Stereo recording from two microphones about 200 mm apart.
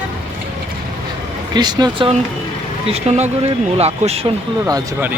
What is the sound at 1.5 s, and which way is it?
Speech, 20° right (ahead or behind).